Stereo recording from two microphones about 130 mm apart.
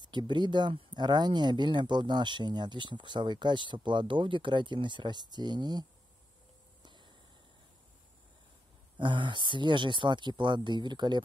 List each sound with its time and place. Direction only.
0.0 s speech: 35° right (ahead or behind)
6.8 s a sound: 35° right (ahead or behind)
8.9 s speech: 40° right (ahead or behind)